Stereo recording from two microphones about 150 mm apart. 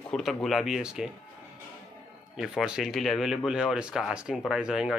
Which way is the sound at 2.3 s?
Centre (ahead or behind).